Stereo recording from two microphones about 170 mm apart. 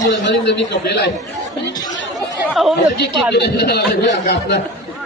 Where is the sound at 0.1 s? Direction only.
90° left.